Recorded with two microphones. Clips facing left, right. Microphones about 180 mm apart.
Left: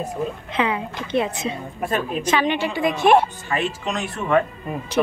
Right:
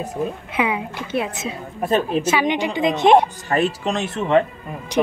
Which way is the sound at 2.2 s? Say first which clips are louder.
Right 1 dB; 10° right (ahead or behind).